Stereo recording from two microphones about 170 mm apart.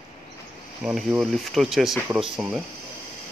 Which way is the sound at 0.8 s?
5° right (ahead or behind).